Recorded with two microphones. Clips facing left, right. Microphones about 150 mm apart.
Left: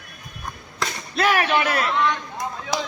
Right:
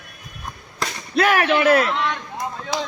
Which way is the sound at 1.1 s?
50° right (ahead or behind).